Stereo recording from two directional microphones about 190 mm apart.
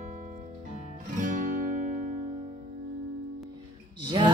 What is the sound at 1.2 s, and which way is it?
Guitar, 45° right (ahead or behind).